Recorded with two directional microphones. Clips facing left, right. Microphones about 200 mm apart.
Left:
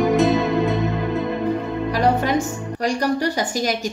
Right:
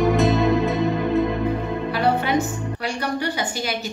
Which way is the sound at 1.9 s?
40° left (ahead or behind).